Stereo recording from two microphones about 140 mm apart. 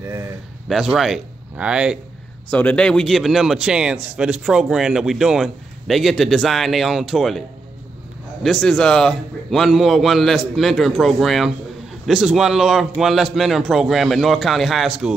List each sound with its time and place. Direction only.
0.0 s speech: 20° right (ahead or behind)
0.7 s a man's voice: centre (ahead or behind)
2.5 s a man's voice: 10° left (ahead or behind)